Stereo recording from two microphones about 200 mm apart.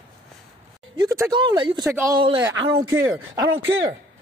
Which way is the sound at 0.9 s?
20° right (ahead or behind).